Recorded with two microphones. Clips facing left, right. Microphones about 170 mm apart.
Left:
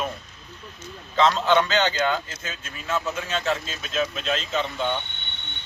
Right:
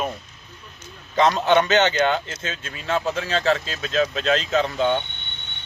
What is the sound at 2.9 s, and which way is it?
Speech, 30° right (ahead or behind).